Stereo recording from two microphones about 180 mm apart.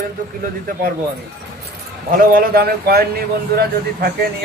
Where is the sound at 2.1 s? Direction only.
50° right (ahead or behind).